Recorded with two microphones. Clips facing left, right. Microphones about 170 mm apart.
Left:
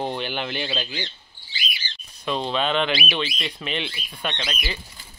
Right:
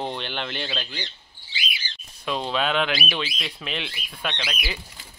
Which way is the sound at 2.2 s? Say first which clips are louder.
Left 1 dB; 5° right (ahead or behind).